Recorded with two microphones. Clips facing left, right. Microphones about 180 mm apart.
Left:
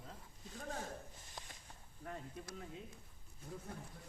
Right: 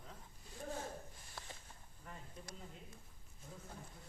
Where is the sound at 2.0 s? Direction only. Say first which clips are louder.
Left 7 dB; 70° left (ahead or behind).